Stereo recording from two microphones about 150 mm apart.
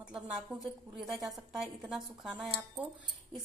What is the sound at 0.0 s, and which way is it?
A woman's voice, 5° right (ahead or behind).